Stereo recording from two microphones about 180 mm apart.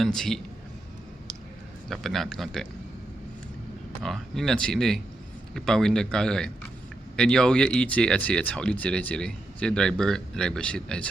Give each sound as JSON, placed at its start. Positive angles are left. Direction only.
{"t": 0.0, "sound": "speech", "side_deg": 0}
{"t": 1.9, "sound": "speech", "side_deg": 0}
{"t": 4.0, "sound": "speech", "side_deg": 0}